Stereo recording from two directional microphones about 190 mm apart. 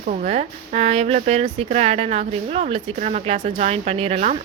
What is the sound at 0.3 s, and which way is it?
Speech, 35° right (ahead or behind).